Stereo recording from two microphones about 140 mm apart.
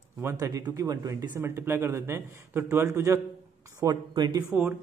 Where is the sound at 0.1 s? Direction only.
20° right (ahead or behind).